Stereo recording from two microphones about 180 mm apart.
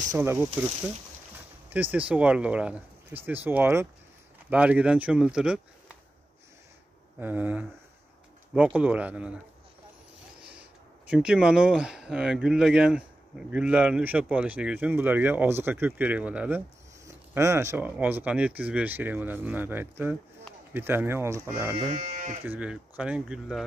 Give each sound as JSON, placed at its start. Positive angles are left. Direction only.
{"t": 0.1, "sound": "speech", "side_deg": -15}
{"t": 7.2, "sound": "speech", "side_deg": -10}
{"t": 11.1, "sound": "speech", "side_deg": -5}
{"t": 21.7, "sound": "speech", "side_deg": -45}
{"t": 22.4, "sound": "speech", "side_deg": -10}